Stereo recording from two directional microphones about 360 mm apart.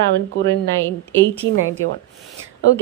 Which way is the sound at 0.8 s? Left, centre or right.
Centre.